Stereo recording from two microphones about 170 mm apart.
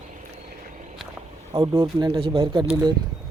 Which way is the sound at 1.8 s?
30° right (ahead or behind).